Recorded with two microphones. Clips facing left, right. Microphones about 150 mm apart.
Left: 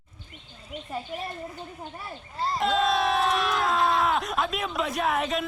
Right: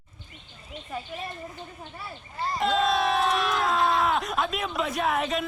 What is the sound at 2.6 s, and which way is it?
Crowd, centre (ahead or behind).